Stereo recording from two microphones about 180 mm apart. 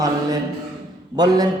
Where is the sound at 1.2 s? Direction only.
20° right (ahead or behind).